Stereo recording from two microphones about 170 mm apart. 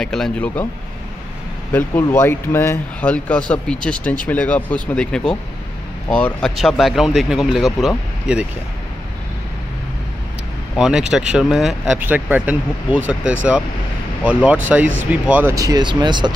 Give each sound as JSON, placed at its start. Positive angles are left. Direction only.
{"t": 0.0, "sound": "speech", "side_deg": 5}
{"t": 1.7, "sound": "speech", "side_deg": 10}
{"t": 10.8, "sound": "speech", "side_deg": -5}